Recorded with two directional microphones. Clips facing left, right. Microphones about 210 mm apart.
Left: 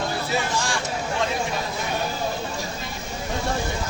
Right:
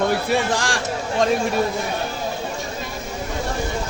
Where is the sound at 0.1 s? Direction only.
90° right.